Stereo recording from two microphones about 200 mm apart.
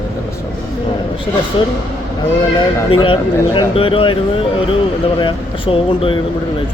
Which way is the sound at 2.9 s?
25° left (ahead or behind).